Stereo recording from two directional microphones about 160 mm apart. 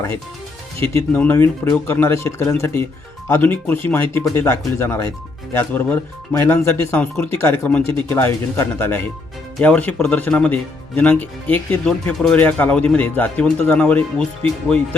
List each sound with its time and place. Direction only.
0.8 s speech: 15° left (ahead or behind)